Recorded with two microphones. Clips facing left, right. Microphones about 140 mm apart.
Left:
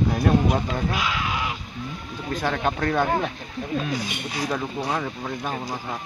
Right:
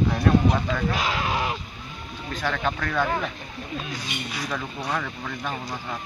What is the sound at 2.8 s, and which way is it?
Speech, 35° left (ahead or behind).